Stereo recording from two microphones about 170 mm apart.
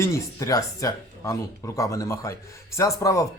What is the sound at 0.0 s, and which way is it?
Speech, 20° left (ahead or behind).